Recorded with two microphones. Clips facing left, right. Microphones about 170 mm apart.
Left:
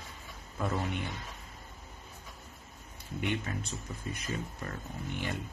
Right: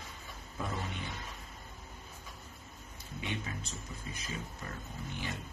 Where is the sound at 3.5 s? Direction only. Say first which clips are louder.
Left 5 dB; 55° left (ahead or behind).